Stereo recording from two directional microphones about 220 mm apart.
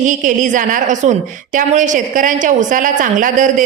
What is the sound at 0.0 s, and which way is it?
A man's voice, 35° right (ahead or behind).